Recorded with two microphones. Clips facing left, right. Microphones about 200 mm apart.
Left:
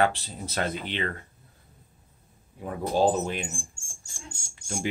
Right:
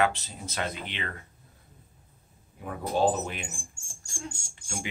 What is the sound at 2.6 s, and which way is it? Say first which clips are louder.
Speech: left 2 dB; 35° left (ahead or behind).